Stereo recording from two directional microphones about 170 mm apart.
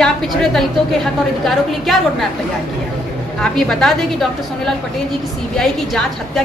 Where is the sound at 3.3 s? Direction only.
5° left (ahead or behind).